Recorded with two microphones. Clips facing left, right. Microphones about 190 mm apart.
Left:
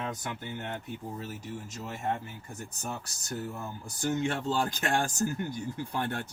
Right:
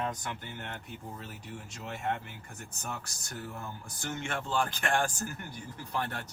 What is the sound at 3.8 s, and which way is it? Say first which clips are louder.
Speech: left 11 dB; 35° left (ahead or behind).